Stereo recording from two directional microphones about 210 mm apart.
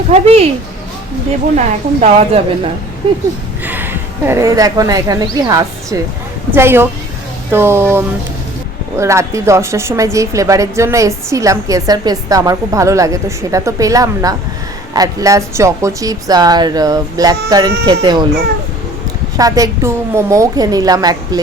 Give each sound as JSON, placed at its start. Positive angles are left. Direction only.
{"t": 0.1, "sound": "speech", "side_deg": -30}
{"t": 1.5, "sound": "a woman's voice", "side_deg": -35}
{"t": 3.6, "sound": "a woman's voice", "side_deg": -10}
{"t": 19.4, "sound": "a woman's voice", "side_deg": -15}